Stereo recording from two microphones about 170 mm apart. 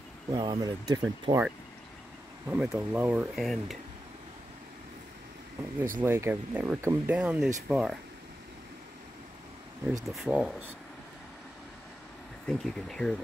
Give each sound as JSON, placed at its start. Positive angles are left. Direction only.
{"t": 0.3, "sound": "speech", "side_deg": -25}
{"t": 2.4, "sound": "speech", "side_deg": -10}
{"t": 5.9, "sound": "speech", "side_deg": -15}
{"t": 10.0, "sound": "speech", "side_deg": 0}
{"t": 12.4, "sound": "speech", "side_deg": 5}